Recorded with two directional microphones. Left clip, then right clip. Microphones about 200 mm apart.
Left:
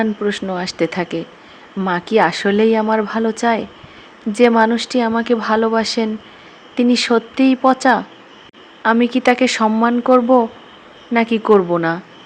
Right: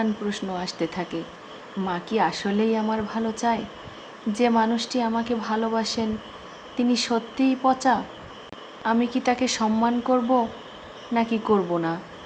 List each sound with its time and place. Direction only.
0.0 s speech: 35° left (ahead or behind)